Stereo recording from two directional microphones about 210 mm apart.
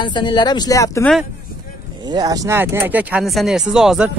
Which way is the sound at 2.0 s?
20° right (ahead or behind).